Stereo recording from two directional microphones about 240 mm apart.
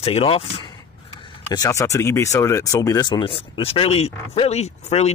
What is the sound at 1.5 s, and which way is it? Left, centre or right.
Speech, centre.